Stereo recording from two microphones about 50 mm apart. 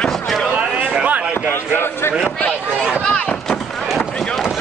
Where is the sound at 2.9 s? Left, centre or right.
Centre.